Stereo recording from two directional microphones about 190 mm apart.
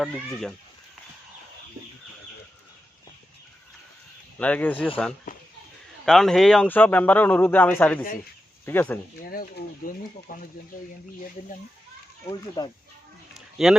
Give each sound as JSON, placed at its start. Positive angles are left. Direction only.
{"t": 0.0, "sound": "speech", "side_deg": 0}
{"t": 4.4, "sound": "a man's voice", "side_deg": 5}
{"t": 5.3, "sound": "a sound", "side_deg": 45}
{"t": 6.1, "sound": "a man's voice", "side_deg": 0}
{"t": 9.2, "sound": "speech", "side_deg": 50}
{"t": 12.6, "sound": "speech", "side_deg": 20}
{"t": 13.3, "sound": "a sound", "side_deg": 0}